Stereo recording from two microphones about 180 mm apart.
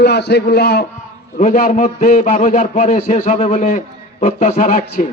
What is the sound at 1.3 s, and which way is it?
A man's voice, 45° left (ahead or behind).